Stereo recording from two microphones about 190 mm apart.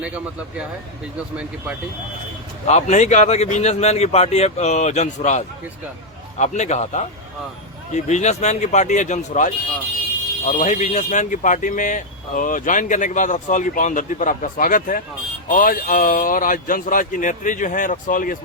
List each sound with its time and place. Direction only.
2.6 s a man's voice: 35° left (ahead or behind)